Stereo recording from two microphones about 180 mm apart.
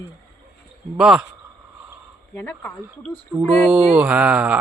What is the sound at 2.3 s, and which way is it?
Speech, 10° left (ahead or behind).